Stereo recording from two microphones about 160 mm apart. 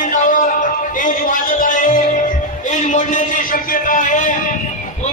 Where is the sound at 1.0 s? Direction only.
55° left (ahead or behind).